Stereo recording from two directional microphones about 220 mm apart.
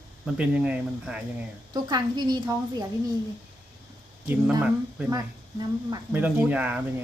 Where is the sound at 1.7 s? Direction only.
20° right (ahead or behind).